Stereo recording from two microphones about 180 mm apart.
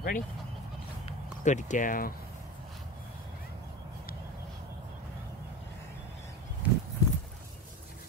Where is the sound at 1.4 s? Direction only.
40° left (ahead or behind).